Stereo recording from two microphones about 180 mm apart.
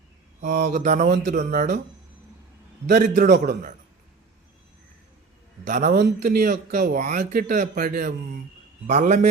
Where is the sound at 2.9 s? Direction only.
50° right (ahead or behind).